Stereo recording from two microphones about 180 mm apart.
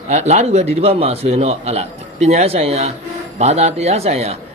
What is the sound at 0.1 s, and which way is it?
Speech, 40° right (ahead or behind).